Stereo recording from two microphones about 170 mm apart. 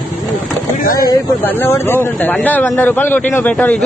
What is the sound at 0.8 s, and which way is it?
Speech, 55° left (ahead or behind).